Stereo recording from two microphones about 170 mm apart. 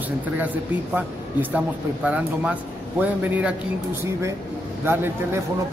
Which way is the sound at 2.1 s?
10° right (ahead or behind).